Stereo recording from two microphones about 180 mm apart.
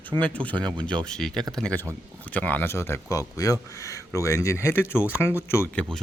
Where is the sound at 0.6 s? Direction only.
25° right (ahead or behind).